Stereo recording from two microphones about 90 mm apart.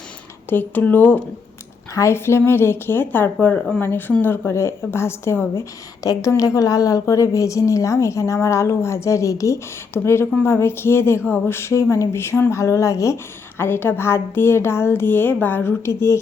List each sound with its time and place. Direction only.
0.5 s a woman's voice: 20° left (ahead or behind)
6.0 s a woman's voice: 40° left (ahead or behind)